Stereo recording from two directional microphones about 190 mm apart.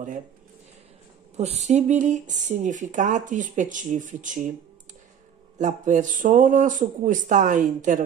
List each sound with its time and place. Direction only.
1.3 s speech: 35° right (ahead or behind)
5.6 s speech: 40° right (ahead or behind)